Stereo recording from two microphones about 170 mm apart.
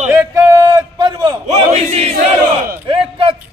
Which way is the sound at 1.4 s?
40° right (ahead or behind).